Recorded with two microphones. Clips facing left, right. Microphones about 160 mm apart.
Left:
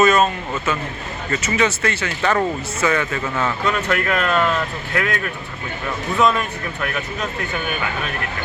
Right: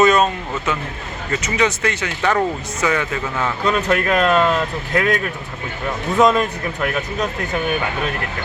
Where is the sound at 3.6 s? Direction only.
30° right (ahead or behind).